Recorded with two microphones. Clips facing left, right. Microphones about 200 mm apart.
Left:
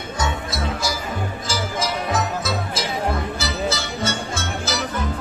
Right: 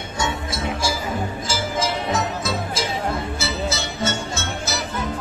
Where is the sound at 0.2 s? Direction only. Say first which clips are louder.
Even; 25° right (ahead or behind).